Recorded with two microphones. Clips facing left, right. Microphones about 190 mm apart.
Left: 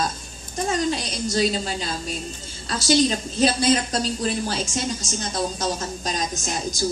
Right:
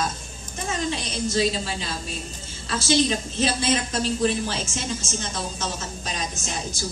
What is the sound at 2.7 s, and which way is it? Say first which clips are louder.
A man's voice: left 2 dB; 35° left (ahead or behind).